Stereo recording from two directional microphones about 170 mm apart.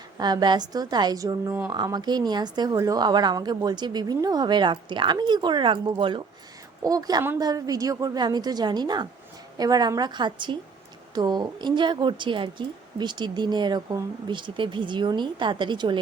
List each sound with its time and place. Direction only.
0.2 s a woman's voice: 25° right (ahead or behind)
1.7 s a woman's voice: 25° right (ahead or behind)